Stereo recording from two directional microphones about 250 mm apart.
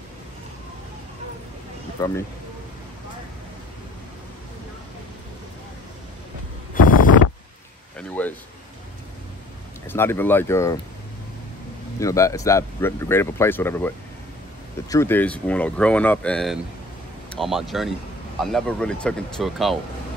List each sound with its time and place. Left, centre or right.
2.0 s speech: centre
6.7 s wind noise: left
8.0 s a sound: centre
9.8 s speech: centre
12.0 s speech: centre